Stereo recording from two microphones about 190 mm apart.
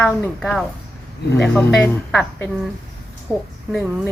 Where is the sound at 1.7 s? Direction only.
5° left (ahead or behind).